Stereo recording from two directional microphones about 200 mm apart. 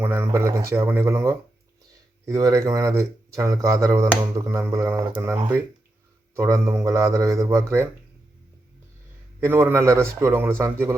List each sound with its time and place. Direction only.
0.0 s speech: 10° right (ahead or behind)
9.4 s speech: 10° right (ahead or behind)